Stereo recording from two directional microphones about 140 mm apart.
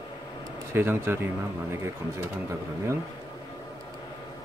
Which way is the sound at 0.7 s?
15° right (ahead or behind).